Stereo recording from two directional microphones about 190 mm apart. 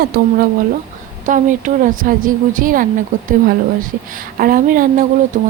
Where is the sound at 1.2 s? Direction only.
40° right (ahead or behind).